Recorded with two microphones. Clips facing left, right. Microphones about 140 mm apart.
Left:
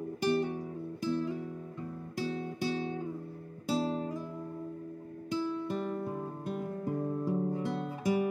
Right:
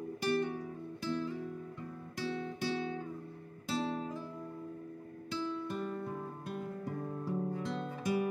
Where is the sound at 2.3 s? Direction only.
30° left (ahead or behind).